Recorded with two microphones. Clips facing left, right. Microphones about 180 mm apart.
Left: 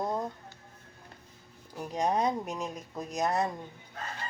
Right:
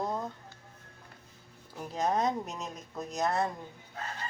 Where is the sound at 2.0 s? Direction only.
10° left (ahead or behind).